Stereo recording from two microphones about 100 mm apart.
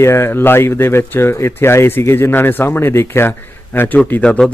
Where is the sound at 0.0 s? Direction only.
25° left (ahead or behind).